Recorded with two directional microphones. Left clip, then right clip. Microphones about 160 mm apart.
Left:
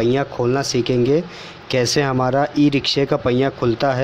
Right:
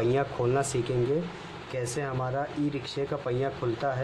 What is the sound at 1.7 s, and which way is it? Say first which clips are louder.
Speech: left 15 dB; 45° left (ahead or behind).